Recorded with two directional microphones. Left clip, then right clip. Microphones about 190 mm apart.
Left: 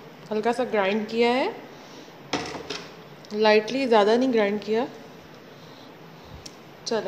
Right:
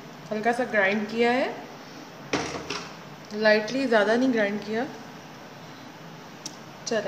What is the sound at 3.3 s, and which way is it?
A woman's voice, 30° left (ahead or behind).